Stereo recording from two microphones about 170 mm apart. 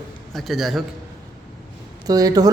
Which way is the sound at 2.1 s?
20° right (ahead or behind).